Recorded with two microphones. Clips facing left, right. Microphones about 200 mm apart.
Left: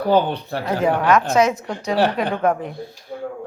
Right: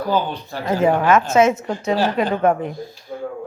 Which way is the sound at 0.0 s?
60° left (ahead or behind).